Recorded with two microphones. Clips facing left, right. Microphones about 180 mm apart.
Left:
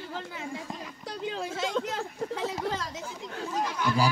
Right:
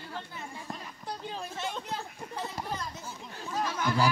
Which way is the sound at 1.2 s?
90° left.